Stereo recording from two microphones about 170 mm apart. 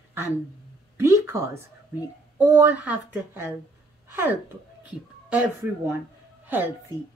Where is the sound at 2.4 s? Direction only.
10° right (ahead or behind).